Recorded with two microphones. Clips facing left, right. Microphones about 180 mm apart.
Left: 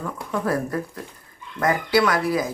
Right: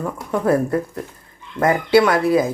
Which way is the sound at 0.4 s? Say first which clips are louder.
Right 8 dB; 25° right (ahead or behind).